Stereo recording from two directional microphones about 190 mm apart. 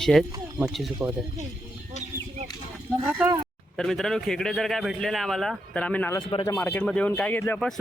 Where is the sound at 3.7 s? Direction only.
Centre (ahead or behind).